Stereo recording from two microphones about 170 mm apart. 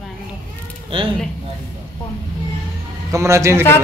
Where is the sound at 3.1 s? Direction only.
15° right (ahead or behind).